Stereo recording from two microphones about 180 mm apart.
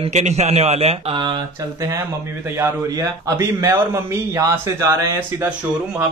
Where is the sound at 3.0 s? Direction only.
15° right (ahead or behind).